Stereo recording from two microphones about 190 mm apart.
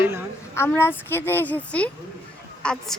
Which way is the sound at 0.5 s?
15° left (ahead or behind).